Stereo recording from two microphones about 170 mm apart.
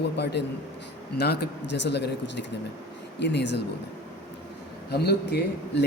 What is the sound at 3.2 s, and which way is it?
Speech, 90° left.